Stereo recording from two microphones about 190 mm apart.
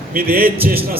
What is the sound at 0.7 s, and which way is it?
Speech, 55° right (ahead or behind).